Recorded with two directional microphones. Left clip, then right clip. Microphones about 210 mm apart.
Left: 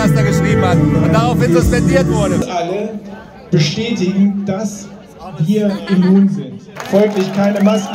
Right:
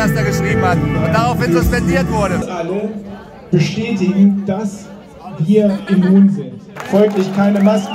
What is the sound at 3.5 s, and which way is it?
Speech, 45° left (ahead or behind).